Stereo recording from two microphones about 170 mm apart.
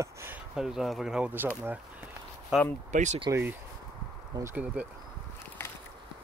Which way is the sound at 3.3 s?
15° right (ahead or behind).